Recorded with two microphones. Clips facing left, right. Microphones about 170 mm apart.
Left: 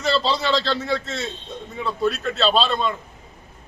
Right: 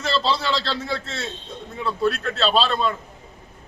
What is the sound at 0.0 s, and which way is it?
A man's voice, centre (ahead or behind).